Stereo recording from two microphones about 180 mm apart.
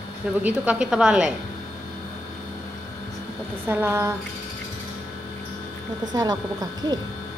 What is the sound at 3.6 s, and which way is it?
Speech, 10° right (ahead or behind).